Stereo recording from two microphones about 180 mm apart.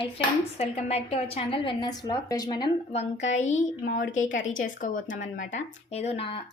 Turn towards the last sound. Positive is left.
turn(degrees=30)  # may be behind; listen again after turning